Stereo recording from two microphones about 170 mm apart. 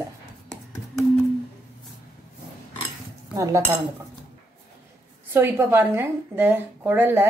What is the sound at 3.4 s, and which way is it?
Speech, 20° right (ahead or behind).